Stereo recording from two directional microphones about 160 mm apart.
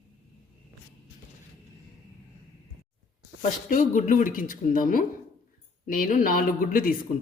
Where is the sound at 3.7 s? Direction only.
55° left (ahead or behind).